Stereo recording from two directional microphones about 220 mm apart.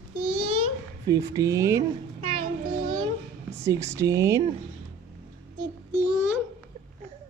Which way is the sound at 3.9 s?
15° right (ahead or behind).